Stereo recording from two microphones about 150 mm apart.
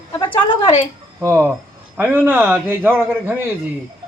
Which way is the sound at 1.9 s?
10° right (ahead or behind).